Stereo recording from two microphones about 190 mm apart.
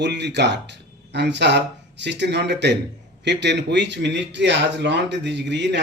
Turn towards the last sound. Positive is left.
turn(degrees=-70)  # may be behind; listen again after turning